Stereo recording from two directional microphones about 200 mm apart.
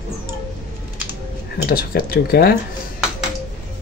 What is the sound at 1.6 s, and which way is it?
Speech, 50° left (ahead or behind).